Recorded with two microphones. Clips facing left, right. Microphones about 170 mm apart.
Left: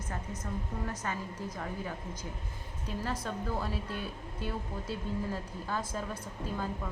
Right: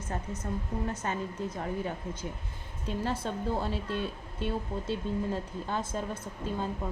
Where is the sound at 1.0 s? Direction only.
25° right (ahead or behind).